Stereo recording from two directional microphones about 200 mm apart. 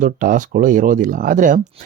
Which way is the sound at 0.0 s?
40° right (ahead or behind).